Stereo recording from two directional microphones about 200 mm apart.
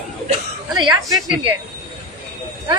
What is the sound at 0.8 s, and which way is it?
Speech, 20° right (ahead or behind).